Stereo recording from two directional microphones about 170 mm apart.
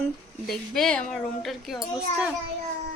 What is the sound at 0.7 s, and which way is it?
A woman's voice, 5° left (ahead or behind).